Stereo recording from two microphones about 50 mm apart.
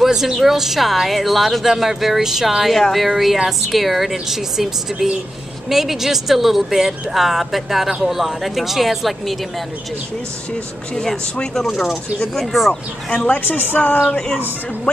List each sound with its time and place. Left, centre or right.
0.0 s speech: centre
12.4 s speech: centre
13.3 s speech: left
14.1 s speech: centre